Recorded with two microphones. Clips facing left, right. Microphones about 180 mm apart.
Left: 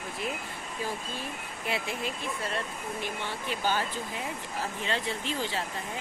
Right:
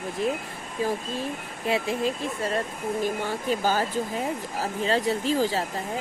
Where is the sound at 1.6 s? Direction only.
30° right (ahead or behind).